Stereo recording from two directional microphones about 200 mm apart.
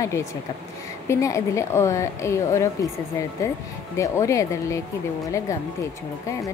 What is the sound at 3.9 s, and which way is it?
Speech, 15° left (ahead or behind).